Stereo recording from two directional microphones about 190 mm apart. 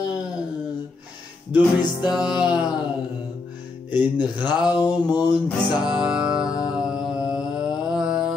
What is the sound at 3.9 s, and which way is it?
Music, 20° left (ahead or behind).